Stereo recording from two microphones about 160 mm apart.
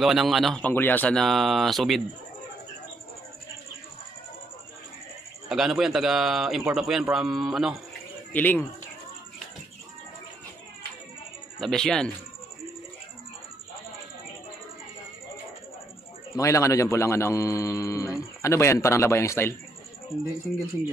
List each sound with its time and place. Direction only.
0.0 s a man's voice: centre (ahead or behind)
5.5 s a man's voice: centre (ahead or behind)
8.3 s speech: 10° left (ahead or behind)
11.6 s a man's voice: 5° left (ahead or behind)
16.3 s a man's voice: 20° left (ahead or behind)
20.1 s a man's voice: centre (ahead or behind)